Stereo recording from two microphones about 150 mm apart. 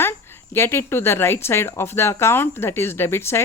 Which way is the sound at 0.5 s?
15° left (ahead or behind).